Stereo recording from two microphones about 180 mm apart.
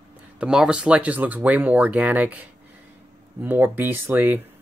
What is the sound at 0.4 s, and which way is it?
Speech, 5° right (ahead or behind).